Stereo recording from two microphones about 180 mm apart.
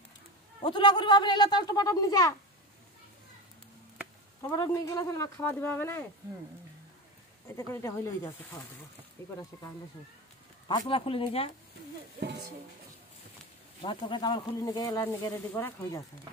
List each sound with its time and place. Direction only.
0.7 s speech: 25° left (ahead or behind)
4.4 s speech: 20° left (ahead or behind)
7.4 s speech: 15° left (ahead or behind)
10.9 s speech: 30° left (ahead or behind)
12.2 s speech: 65° right (ahead or behind)
13.8 s speech: 25° left (ahead or behind)